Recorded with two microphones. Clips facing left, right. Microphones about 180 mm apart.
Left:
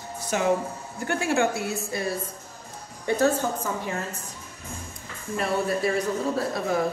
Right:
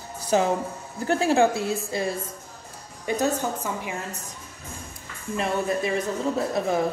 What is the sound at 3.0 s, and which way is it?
A woman's voice, 15° right (ahead or behind).